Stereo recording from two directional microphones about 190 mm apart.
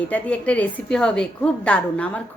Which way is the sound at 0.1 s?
5° left (ahead or behind).